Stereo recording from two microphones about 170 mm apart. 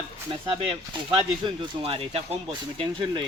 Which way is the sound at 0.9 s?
30° right (ahead or behind).